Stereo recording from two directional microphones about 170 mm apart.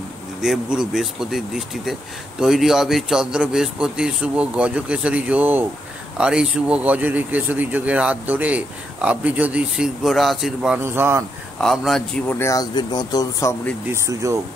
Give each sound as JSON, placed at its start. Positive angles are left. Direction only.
{"t": 0.4, "sound": "speech", "side_deg": -5}
{"t": 10.8, "sound": "speech", "side_deg": -15}
{"t": 11.6, "sound": "speech", "side_deg": 0}
{"t": 12.4, "sound": "speech", "side_deg": 20}
{"t": 13.8, "sound": "speech", "side_deg": -15}